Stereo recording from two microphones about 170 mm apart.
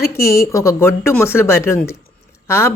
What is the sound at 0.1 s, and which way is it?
A woman's voice, 15° left (ahead or behind).